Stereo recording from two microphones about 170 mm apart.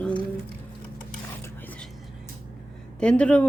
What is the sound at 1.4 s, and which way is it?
Cutlery, 10° left (ahead or behind).